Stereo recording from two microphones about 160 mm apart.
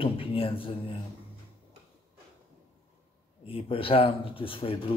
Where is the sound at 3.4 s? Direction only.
35° left (ahead or behind).